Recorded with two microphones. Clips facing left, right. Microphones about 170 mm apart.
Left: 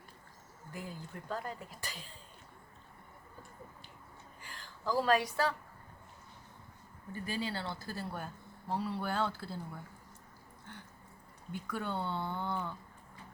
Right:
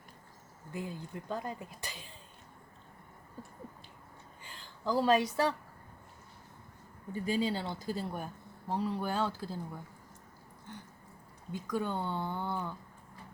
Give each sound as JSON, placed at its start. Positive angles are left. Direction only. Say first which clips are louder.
{"t": 0.7, "sound": "speech", "louder": "right 4 dB", "side_deg": -20}
{"t": 4.4, "sound": "speech", "louder": "right 2 dB", "side_deg": -25}
{"t": 7.1, "sound": "speech", "louder": "right 6 dB", "side_deg": -15}
{"t": 11.5, "sound": "speech", "louder": "right 3 dB", "side_deg": -15}